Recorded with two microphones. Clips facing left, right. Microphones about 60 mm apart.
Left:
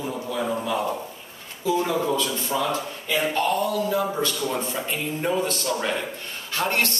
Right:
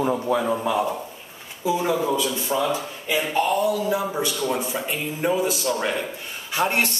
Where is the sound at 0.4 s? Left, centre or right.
Centre.